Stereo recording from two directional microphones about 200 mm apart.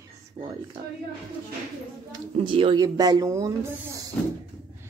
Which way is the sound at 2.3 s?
25° right (ahead or behind).